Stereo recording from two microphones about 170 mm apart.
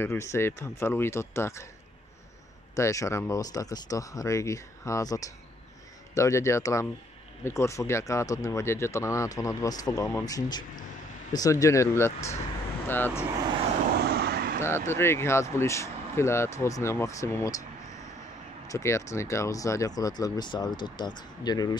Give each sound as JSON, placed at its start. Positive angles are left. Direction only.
{"t": 0.0, "sound": "speech", "side_deg": 15}
{"t": 2.7, "sound": "speech", "side_deg": 20}
{"t": 14.0, "sound": "vehicle", "side_deg": -70}
{"t": 14.9, "sound": "speech", "side_deg": 15}
{"t": 18.7, "sound": "speech", "side_deg": 15}